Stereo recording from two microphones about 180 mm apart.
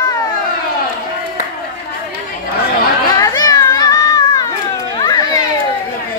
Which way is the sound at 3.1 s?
20° left (ahead or behind).